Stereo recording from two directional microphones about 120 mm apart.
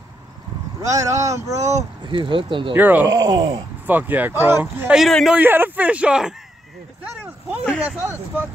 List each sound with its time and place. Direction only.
0.7 s speech: 25° right (ahead or behind)
2.0 s speech: 45° right (ahead or behind)
2.7 s speech: 15° right (ahead or behind)
3.1 s speech: 35° right (ahead or behind)
3.8 s speech: 15° right (ahead or behind)
4.9 s a man's voice: centre (ahead or behind)
5.4 s speech: 15° right (ahead or behind)
7.8 s speech: 15° right (ahead or behind)